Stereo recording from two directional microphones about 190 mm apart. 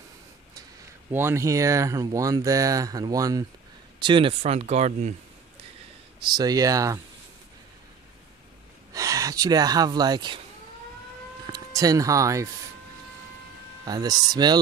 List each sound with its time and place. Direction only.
1.1 s speech: 15° right (ahead or behind); by 5.1 s 35° right (ahead or behind)
6.2 s speech: 20° right (ahead or behind)
8.9 s speech: 20° right (ahead or behind)
11.4 s speech: 20° right (ahead or behind)
13.8 s speech: 20° right (ahead or behind)